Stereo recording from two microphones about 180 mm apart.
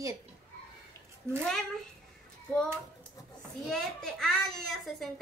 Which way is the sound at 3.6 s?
5° left (ahead or behind).